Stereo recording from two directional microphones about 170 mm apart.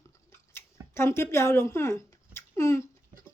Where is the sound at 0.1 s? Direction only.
15° left (ahead or behind).